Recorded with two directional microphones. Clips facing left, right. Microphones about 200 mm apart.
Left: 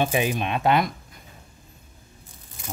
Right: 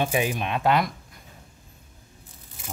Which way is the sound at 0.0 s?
25° left (ahead or behind).